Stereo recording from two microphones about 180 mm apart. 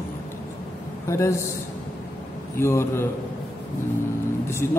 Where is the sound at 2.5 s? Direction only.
15° left (ahead or behind).